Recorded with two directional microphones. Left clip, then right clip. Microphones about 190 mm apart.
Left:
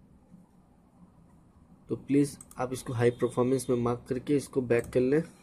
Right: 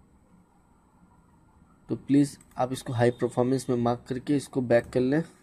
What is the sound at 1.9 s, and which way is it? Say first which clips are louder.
Speech: right 3 dB; 45° right (ahead or behind).